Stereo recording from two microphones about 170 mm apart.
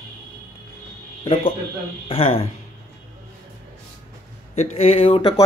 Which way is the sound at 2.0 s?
35° left (ahead or behind).